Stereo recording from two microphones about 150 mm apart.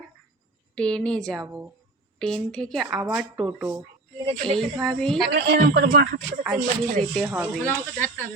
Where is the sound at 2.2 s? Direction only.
5° left (ahead or behind).